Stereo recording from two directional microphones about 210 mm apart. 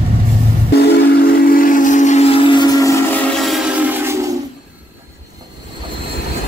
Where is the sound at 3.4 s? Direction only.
5° right (ahead or behind).